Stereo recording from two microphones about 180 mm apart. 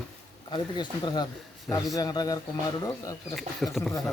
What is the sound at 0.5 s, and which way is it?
Speech, 25° left (ahead or behind).